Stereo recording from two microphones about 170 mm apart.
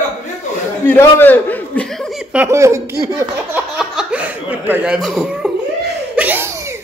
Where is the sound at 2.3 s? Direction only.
15° right (ahead or behind).